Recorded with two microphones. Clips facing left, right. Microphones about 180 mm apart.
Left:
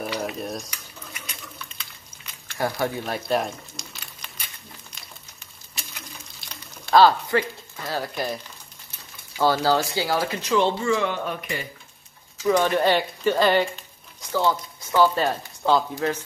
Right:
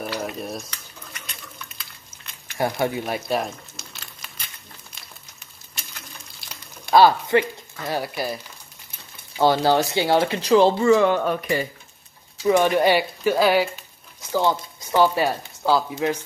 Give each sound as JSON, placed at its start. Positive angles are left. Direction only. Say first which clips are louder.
{"t": 0.0, "sound": "stir", "louder": "even", "side_deg": 0}
{"t": 0.7, "sound": "cutlery", "louder": "left 1 dB", "side_deg": 10}
{"t": 2.4, "sound": "speech", "louder": "right 2 dB", "side_deg": -20}
{"t": 3.3, "sound": "boiling", "louder": "left 1 dB", "side_deg": 0}
{"t": 5.8, "sound": "a sound", "louder": "left 1 dB", "side_deg": 0}
{"t": 6.9, "sound": "speech", "louder": "right 1 dB", "side_deg": -15}
{"t": 9.4, "sound": "speech", "louder": "right 3 dB", "side_deg": -20}
{"t": 12.4, "sound": "speech", "louder": "right 2 dB", "side_deg": -15}
{"t": 14.3, "sound": "speech", "louder": "right 1 dB", "side_deg": -20}
{"t": 15.2, "sound": "speech", "louder": "right 1 dB", "side_deg": -5}